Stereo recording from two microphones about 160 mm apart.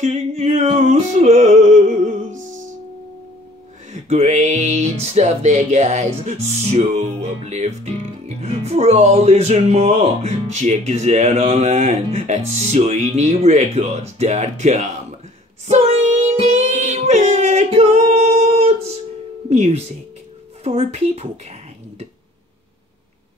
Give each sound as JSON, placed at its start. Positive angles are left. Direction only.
{"t": 0.0, "sound": "music", "side_deg": -45}
{"t": 3.9, "sound": "music", "side_deg": -45}
{"t": 8.4, "sound": "speech", "side_deg": -40}
{"t": 15.6, "sound": "child singing", "side_deg": -45}
{"t": 19.5, "sound": "speech", "side_deg": -45}